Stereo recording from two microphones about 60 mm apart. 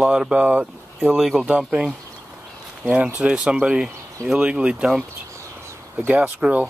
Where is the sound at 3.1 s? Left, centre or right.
Centre.